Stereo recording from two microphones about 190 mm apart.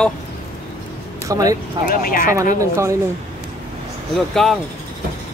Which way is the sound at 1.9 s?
50° left (ahead or behind).